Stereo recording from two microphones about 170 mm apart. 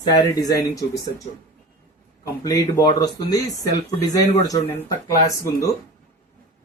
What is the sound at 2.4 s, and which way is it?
Speech, 25° left (ahead or behind).